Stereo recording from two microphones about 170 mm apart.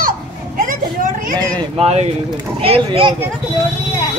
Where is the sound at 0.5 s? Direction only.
50° right (ahead or behind).